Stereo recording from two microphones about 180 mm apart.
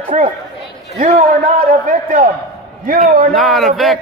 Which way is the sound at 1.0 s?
45° right (ahead or behind).